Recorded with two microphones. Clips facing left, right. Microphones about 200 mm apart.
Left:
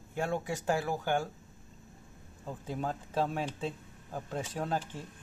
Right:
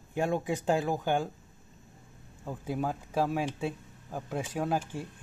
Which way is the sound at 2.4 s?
10° right (ahead or behind).